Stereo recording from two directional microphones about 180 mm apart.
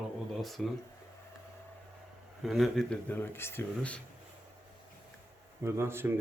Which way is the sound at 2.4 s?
Centre (ahead or behind).